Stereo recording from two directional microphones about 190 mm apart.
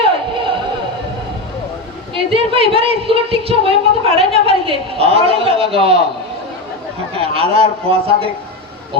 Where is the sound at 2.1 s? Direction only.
30° right (ahead or behind).